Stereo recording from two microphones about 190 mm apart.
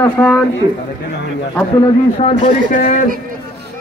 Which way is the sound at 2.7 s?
45° left (ahead or behind).